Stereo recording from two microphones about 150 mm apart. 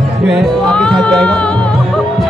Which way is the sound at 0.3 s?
Centre (ahead or behind).